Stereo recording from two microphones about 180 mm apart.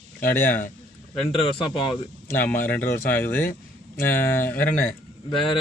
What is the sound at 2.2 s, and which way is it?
A man's voice, 10° left (ahead or behind).